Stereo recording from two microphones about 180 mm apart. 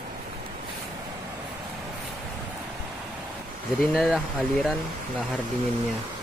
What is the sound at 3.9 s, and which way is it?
Speech, 5° right (ahead or behind).